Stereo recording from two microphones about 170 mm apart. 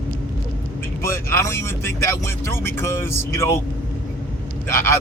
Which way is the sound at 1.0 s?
15° left (ahead or behind).